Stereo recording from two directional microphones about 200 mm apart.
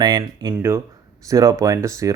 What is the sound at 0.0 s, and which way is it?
A man's voice, 20° right (ahead or behind).